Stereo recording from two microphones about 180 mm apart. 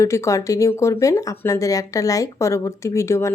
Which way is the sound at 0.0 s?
15° left (ahead or behind).